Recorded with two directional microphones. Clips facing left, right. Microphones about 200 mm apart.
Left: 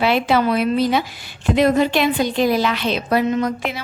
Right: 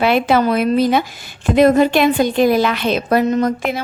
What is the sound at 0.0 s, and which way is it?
A woman's voice, 50° right (ahead or behind).